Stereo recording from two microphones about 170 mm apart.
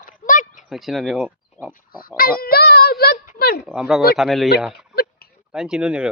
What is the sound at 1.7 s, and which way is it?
Oink, 60° left (ahead or behind).